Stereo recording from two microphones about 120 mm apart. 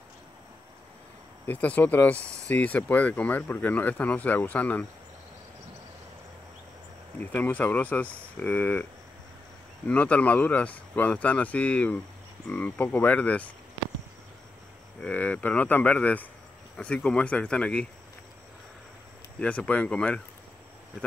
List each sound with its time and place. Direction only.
1.4 s speech: 15° left (ahead or behind)
7.2 s speech: 15° left (ahead or behind)
9.8 s speech: 10° left (ahead or behind)
15.0 s speech: 10° left (ahead or behind)
19.4 s speech: 10° left (ahead or behind)